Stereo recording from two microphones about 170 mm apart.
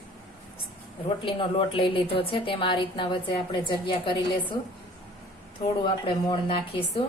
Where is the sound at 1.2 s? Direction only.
30° left (ahead or behind).